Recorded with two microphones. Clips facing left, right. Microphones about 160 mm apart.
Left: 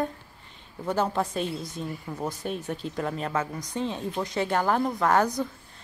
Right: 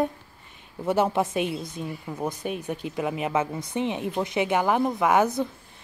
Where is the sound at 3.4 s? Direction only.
25° right (ahead or behind).